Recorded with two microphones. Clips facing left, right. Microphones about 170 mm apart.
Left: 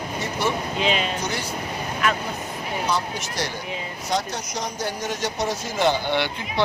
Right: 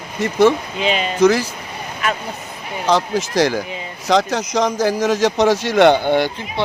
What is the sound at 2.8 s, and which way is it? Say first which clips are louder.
Speech: right 11 dB; 90° right.